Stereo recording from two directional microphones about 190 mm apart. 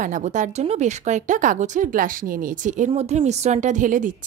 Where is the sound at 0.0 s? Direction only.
40° right (ahead or behind).